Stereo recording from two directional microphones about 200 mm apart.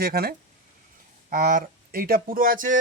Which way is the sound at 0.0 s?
50° right (ahead or behind).